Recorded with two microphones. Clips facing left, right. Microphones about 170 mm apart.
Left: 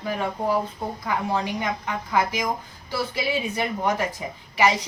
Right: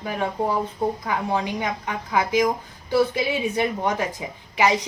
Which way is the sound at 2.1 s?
15° right (ahead or behind).